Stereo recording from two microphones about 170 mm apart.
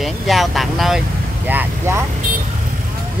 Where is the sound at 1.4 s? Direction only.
10° right (ahead or behind).